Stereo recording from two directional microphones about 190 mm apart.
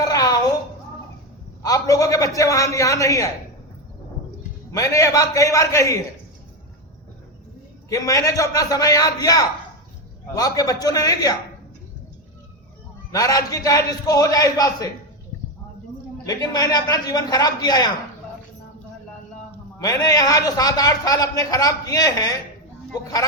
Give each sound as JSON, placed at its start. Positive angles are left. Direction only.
{"t": 0.0, "sound": "a sound", "side_deg": 20}
{"t": 1.6, "sound": "a man's voice", "side_deg": 20}
{"t": 4.7, "sound": "a man's voice", "side_deg": 15}
{"t": 7.9, "sound": "a man's voice", "side_deg": 15}
{"t": 13.1, "sound": "a man's voice", "side_deg": 15}
{"t": 16.2, "sound": "a man's voice", "side_deg": 20}
{"t": 19.8, "sound": "a man's voice", "side_deg": 20}